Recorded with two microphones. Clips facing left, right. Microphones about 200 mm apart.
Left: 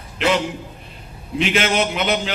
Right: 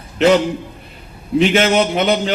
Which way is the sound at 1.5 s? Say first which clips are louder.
Right 5 dB; 45° right (ahead or behind).